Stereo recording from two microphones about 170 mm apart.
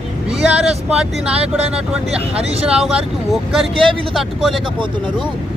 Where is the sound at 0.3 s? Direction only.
5° right (ahead or behind).